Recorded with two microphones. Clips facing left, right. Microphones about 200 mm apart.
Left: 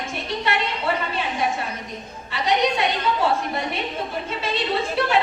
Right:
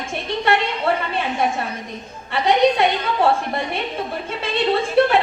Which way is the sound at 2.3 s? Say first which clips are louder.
Right 5 dB; 55° right (ahead or behind).